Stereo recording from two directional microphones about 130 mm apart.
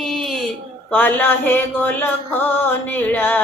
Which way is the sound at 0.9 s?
15° left (ahead or behind).